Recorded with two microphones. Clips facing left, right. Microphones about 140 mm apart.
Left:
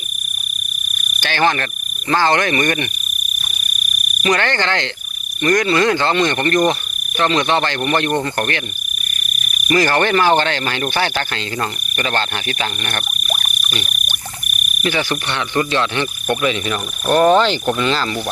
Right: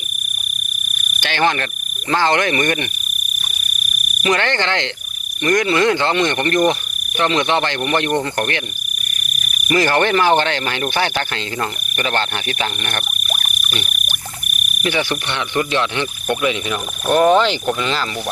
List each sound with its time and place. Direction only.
1.2 s insect: 20° right (ahead or behind)
2.0 s speech: 20° right (ahead or behind)
4.2 s speech: 20° right (ahead or behind)
9.7 s speech: 20° right (ahead or behind)
13.8 s frog: 5° right (ahead or behind)
14.8 s speech: 20° right (ahead or behind)